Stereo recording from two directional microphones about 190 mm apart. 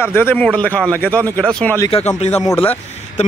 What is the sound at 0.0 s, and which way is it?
Speech, 10° left (ahead or behind).